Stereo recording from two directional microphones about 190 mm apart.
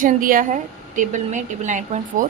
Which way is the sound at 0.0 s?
45° right (ahead or behind).